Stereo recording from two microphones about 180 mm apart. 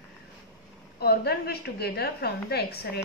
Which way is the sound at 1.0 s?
60° left (ahead or behind).